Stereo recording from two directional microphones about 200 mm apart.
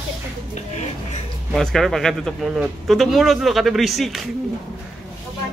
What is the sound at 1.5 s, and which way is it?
Speech, centre (ahead or behind).